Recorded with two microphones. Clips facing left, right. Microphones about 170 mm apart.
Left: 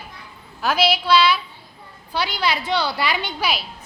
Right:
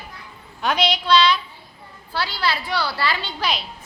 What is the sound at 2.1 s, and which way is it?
A woman's voice, 15° left (ahead or behind).